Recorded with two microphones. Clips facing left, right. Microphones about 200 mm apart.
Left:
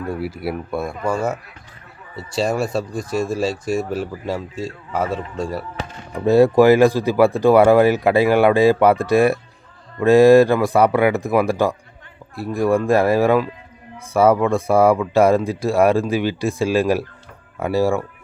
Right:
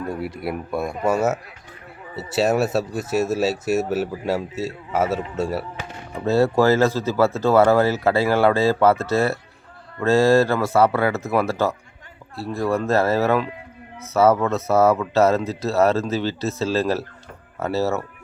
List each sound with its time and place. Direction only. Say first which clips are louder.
0.1 s speech: left 2 dB; 5° left (ahead or behind)
0.9 s speech: right 4 dB; 20° right (ahead or behind)
1.1 s speech: right 2 dB; 5° right (ahead or behind)
6.1 s speech: left 5 dB; 15° left (ahead or behind)